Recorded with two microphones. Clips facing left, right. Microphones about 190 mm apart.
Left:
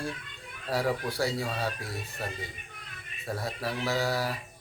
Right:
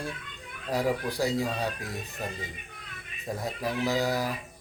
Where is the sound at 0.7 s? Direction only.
20° right (ahead or behind).